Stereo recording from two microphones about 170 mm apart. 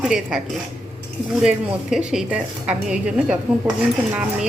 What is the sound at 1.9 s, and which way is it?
A woman's voice, 5° right (ahead or behind).